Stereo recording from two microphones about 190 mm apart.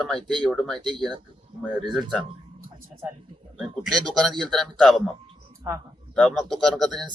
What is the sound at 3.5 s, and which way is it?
Speech, centre (ahead or behind).